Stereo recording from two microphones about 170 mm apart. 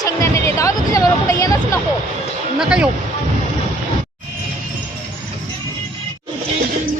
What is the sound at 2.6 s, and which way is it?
Speech, 5° right (ahead or behind).